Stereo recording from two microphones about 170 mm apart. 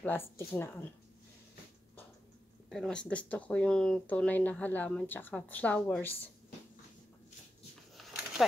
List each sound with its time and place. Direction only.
0.0 s speech: 15° left (ahead or behind)
2.7 s speech: 5° left (ahead or behind)
7.9 s a sound: centre (ahead or behind)